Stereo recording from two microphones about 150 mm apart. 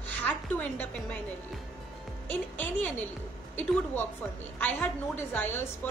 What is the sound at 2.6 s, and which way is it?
A woman's voice, 10° left (ahead or behind).